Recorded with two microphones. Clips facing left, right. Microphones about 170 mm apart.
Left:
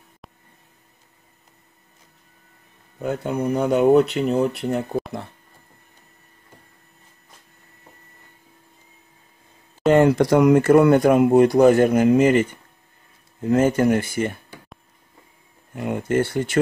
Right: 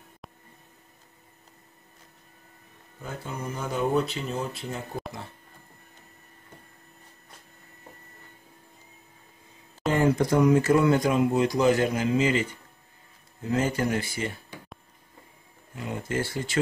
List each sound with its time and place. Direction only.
0.2 s music: centre (ahead or behind)
3.0 s speech: 70° left (ahead or behind)
9.8 s speech: 70° left (ahead or behind); by 14.4 s 55° left (ahead or behind)
15.7 s speech: 55° left (ahead or behind)